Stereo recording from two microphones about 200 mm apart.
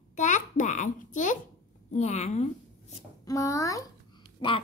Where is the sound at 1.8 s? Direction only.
35° left (ahead or behind).